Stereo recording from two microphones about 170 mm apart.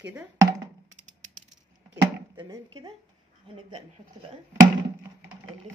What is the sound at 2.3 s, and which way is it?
Speech, 25° right (ahead or behind).